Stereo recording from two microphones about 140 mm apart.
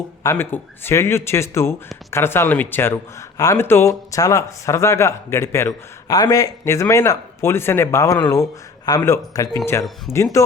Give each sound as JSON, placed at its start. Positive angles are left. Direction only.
{"t": 0.2, "sound": "a man's voice", "side_deg": 20}